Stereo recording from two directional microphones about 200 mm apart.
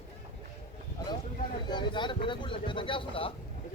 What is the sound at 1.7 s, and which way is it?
Speech, 20° left (ahead or behind).